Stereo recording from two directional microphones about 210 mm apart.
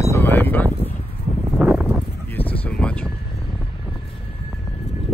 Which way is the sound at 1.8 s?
10° left (ahead or behind).